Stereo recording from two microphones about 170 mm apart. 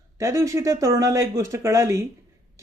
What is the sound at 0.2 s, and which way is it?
Speech, 20° right (ahead or behind).